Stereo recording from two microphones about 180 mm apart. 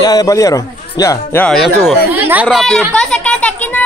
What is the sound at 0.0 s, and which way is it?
Speech, 20° left (ahead or behind).